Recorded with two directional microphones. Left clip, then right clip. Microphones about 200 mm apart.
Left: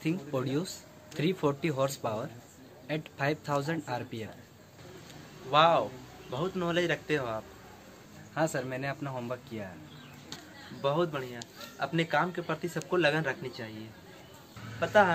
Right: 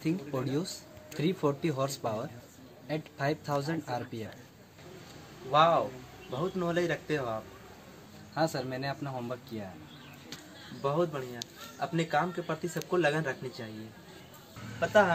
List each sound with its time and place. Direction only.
0.0 s a man's voice: 20° left (ahead or behind)
5.5 s speech: centre (ahead or behind)
8.4 s a man's voice: 15° left (ahead or behind)
10.8 s a man's voice: 5° left (ahead or behind)
14.8 s speech: centre (ahead or behind)